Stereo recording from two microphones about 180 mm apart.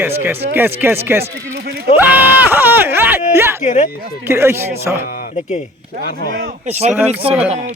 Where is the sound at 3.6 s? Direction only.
40° left (ahead or behind).